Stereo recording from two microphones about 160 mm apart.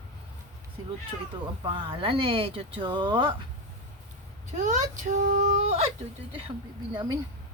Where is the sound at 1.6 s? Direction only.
30° right (ahead or behind).